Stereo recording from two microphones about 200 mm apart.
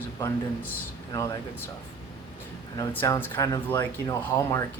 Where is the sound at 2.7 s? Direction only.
15° left (ahead or behind).